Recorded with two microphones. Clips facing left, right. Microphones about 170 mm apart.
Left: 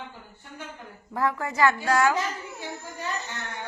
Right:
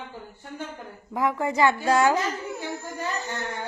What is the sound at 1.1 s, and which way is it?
Speech, 20° right (ahead or behind).